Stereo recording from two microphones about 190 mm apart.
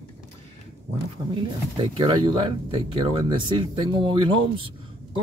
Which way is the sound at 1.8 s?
25° right (ahead or behind).